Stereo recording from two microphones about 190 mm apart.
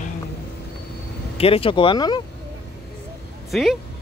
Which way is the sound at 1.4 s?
30° left (ahead or behind).